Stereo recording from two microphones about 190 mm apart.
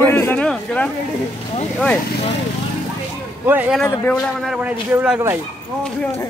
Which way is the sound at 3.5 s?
10° right (ahead or behind).